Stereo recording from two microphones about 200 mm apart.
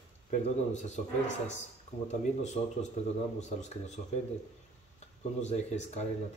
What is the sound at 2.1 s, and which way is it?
Speech, 35° left (ahead or behind).